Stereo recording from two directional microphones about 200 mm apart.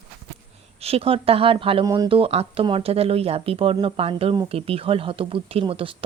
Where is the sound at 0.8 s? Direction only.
30° right (ahead or behind).